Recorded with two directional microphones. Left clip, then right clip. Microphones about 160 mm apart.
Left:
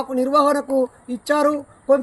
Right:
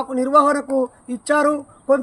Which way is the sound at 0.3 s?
15° left (ahead or behind).